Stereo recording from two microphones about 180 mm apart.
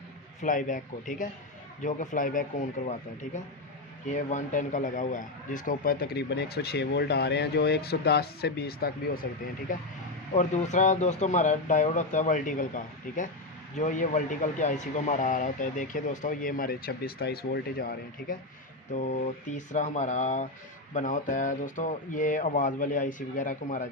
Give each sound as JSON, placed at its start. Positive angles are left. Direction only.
{"t": 0.4, "sound": "speech", "side_deg": 45}
{"t": 9.7, "sound": "speech", "side_deg": 45}
{"t": 18.9, "sound": "speech", "side_deg": 45}